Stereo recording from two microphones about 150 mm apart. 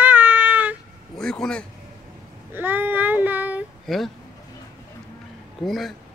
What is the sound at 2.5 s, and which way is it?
Child singing, 10° right (ahead or behind).